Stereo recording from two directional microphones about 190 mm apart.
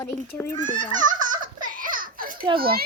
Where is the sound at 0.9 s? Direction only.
40° right (ahead or behind).